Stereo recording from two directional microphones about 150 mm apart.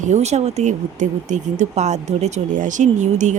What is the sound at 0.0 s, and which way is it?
Speech, 50° right (ahead or behind).